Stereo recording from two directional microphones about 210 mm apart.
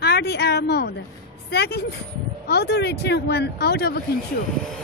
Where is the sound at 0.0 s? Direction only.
50° left (ahead or behind).